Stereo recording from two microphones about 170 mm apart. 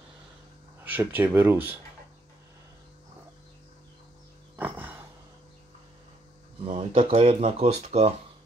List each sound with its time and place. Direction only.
0.8 s speech: 10° right (ahead or behind)
4.6 s a sound: 10° right (ahead or behind)
6.7 s speech: 30° right (ahead or behind)